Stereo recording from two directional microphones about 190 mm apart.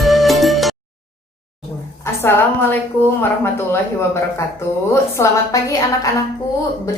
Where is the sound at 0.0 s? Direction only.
Centre (ahead or behind).